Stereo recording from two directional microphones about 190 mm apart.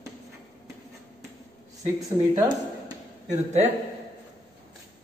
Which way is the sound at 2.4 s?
20° right (ahead or behind).